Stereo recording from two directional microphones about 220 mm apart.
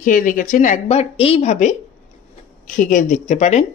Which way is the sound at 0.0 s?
35° left (ahead or behind).